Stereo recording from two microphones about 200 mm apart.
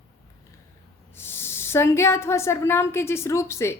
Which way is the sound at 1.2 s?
10° left (ahead or behind).